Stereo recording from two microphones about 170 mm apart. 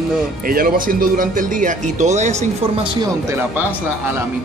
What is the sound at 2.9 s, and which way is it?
Speech, 25° right (ahead or behind).